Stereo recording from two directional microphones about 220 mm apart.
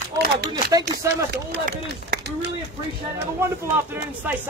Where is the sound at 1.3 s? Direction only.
45° right (ahead or behind).